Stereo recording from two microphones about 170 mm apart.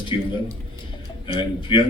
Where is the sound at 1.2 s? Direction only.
30° left (ahead or behind).